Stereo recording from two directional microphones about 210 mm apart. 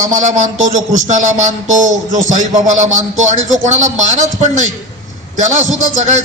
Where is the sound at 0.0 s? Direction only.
35° right (ahead or behind).